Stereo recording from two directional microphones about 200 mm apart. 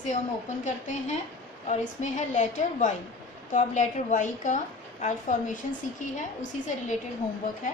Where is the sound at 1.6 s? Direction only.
35° left (ahead or behind).